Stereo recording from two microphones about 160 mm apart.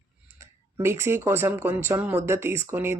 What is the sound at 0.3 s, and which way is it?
Speech, 15° right (ahead or behind).